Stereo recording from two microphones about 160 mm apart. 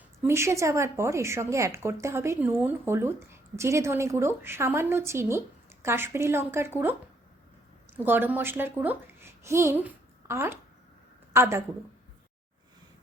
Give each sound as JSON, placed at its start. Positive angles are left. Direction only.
{"t": 0.2, "sound": "a woman's voice", "side_deg": -15}
{"t": 7.9, "sound": "a child's voice", "side_deg": -10}